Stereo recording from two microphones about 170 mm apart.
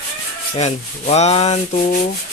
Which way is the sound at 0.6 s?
40° left (ahead or behind).